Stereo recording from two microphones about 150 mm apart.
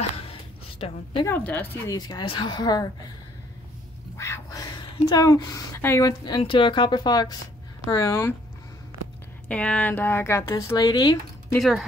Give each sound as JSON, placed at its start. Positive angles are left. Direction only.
{"t": 0.3, "sound": "a sound", "side_deg": 40}
{"t": 1.2, "sound": "speech", "side_deg": 10}
{"t": 1.9, "sound": "speech", "side_deg": 25}
{"t": 4.2, "sound": "speech", "side_deg": 20}
{"t": 9.5, "sound": "speech", "side_deg": 10}